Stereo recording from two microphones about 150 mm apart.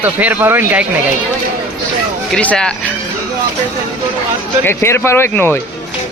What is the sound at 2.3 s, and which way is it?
Speech, 5° left (ahead or behind).